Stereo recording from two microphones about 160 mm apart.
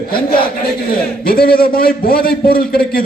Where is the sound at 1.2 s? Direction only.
70° left (ahead or behind).